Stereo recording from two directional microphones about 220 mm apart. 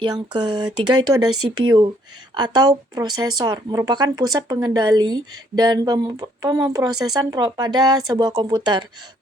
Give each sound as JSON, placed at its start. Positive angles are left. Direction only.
{"t": 0.0, "sound": "speech", "side_deg": -20}
{"t": 2.3, "sound": "speech", "side_deg": -20}